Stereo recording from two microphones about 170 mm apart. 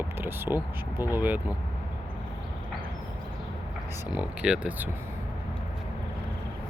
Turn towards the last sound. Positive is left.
turn(degrees=-10)  # may be behind; listen again after turning